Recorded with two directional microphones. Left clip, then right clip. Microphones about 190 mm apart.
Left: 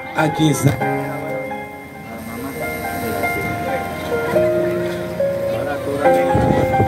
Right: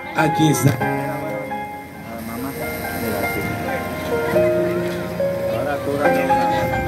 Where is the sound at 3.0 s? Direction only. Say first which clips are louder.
Left 2 dB; 20° right (ahead or behind).